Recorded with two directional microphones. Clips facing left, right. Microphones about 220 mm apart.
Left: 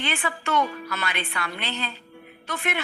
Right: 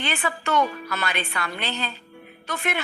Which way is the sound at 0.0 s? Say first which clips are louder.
Right 1 dB; 40° right (ahead or behind).